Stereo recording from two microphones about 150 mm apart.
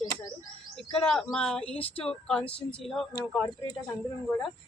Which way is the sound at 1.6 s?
40° left (ahead or behind).